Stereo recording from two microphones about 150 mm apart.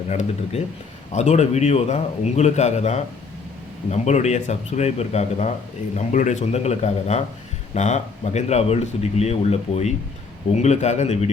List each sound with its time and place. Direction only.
0.1 s speech: 50° left (ahead or behind)